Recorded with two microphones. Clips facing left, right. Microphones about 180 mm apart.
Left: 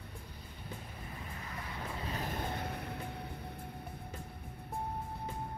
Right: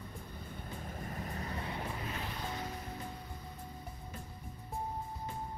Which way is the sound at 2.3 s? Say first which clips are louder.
Left 2 dB; 55° left (ahead or behind).